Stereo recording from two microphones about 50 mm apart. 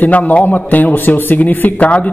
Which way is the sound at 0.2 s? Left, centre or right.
Left.